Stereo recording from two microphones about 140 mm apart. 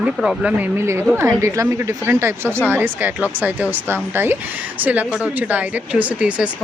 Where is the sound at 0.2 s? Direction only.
5° right (ahead or behind).